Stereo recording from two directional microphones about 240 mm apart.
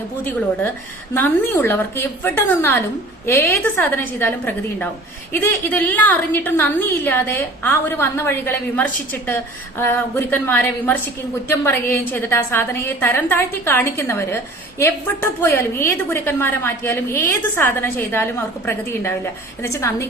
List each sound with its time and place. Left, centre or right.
0.3 s a woman's voice: centre